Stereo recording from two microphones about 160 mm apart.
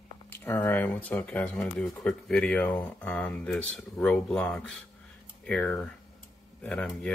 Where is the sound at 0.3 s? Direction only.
10° left (ahead or behind).